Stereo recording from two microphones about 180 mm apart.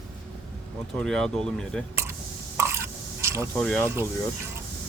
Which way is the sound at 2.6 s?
15° right (ahead or behind).